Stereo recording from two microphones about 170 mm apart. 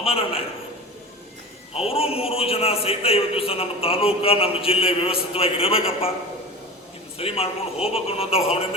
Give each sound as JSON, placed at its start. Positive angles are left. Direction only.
{"t": 0.0, "sound": "a man's voice", "side_deg": 35}
{"t": 1.7, "sound": "a man's voice", "side_deg": 35}
{"t": 7.2, "sound": "a man's voice", "side_deg": 35}